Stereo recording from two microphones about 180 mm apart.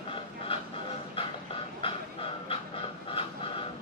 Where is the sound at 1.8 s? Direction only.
30° left (ahead or behind).